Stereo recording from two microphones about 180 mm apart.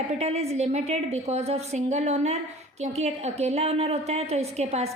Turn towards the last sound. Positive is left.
turn(degrees=-35)  # may be behind; listen again after turning